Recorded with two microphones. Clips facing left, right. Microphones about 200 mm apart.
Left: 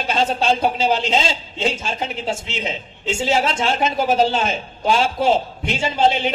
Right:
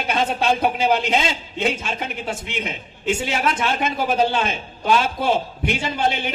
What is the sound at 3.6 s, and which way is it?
A man's voice, 55° right (ahead or behind).